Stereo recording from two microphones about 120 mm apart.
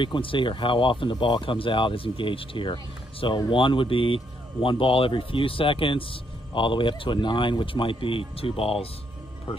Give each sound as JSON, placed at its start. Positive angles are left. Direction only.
{"t": 0.0, "sound": "speech", "side_deg": 45}